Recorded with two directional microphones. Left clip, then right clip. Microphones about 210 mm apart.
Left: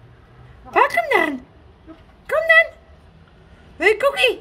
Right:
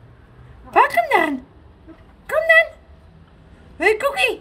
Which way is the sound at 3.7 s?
5° right (ahead or behind).